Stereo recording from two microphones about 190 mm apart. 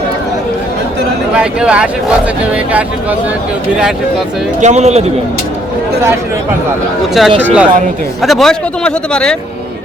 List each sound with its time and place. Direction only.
1.4 s speech: 5° right (ahead or behind)
4.6 s speech: 35° right (ahead or behind)
7.1 s speech: centre (ahead or behind)